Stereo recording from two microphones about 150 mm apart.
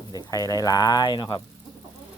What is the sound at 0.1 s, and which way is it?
Speech, 25° left (ahead or behind).